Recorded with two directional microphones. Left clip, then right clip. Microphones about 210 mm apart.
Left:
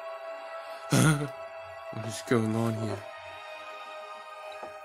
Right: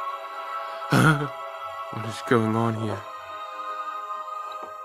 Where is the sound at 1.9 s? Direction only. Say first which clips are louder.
Right 5 dB; 10° right (ahead or behind).